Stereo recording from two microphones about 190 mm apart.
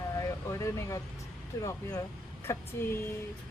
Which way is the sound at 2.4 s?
15° left (ahead or behind).